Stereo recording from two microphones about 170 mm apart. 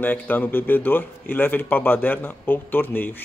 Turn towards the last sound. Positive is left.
turn(degrees=10)  # may be behind; listen again after turning